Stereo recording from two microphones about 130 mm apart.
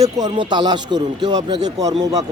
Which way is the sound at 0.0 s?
30° right (ahead or behind).